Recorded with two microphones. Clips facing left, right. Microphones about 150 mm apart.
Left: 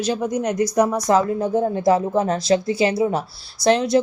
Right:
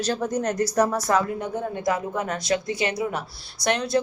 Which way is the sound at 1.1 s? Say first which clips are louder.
Left 6 dB; 30° left (ahead or behind).